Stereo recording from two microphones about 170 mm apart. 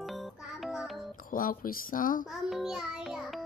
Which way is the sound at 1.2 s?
55° left (ahead or behind).